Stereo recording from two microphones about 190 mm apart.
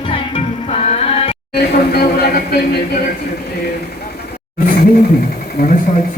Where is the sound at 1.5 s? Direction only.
55° left (ahead or behind).